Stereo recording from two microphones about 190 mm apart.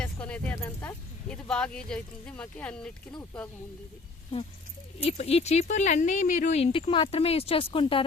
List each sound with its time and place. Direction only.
0.0 s speech: 10° left (ahead or behind)
5.0 s speech: 35° left (ahead or behind)